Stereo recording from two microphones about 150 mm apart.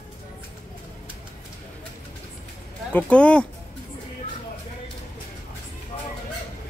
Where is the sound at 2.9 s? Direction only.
10° left (ahead or behind).